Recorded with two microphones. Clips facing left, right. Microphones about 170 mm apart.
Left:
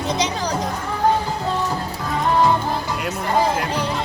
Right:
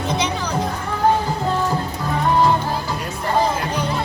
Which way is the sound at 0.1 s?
40° left (ahead or behind).